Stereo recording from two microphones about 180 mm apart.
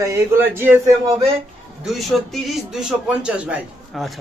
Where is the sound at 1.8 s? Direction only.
Centre (ahead or behind).